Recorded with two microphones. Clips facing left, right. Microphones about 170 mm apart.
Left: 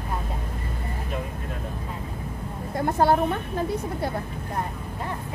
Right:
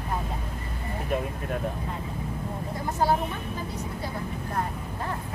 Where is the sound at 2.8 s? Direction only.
60° left (ahead or behind).